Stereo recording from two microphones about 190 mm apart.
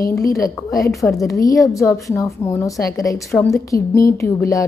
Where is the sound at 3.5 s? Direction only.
15° left (ahead or behind).